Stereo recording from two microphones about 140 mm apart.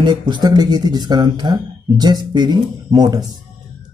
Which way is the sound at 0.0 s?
30° right (ahead or behind).